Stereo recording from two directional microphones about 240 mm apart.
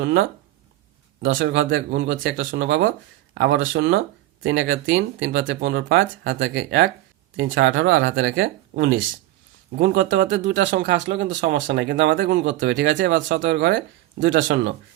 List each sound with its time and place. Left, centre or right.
0.0 s speech: right
1.3 s speech: right
10.7 s speech: right
11.1 s speech: right
11.3 s speech: right
12.5 s speech: right